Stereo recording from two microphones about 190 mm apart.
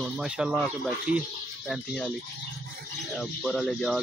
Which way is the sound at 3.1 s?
Centre (ahead or behind).